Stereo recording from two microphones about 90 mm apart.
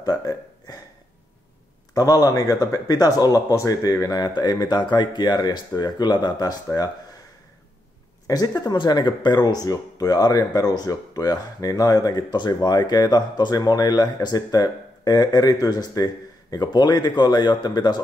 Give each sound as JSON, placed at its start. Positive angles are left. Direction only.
{"t": 0.0, "sound": "speech", "side_deg": 45}
{"t": 2.0, "sound": "a man's voice", "side_deg": 40}
{"t": 8.3, "sound": "speech", "side_deg": 45}